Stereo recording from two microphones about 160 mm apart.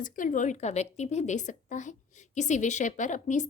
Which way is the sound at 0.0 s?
55° left (ahead or behind).